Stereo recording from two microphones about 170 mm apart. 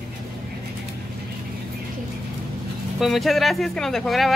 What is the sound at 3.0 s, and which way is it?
Speech, centre (ahead or behind).